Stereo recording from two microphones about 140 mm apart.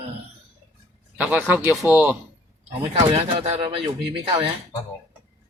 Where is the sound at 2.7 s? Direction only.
45° right (ahead or behind).